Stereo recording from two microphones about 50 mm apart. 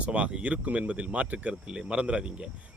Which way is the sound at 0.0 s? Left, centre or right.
Right.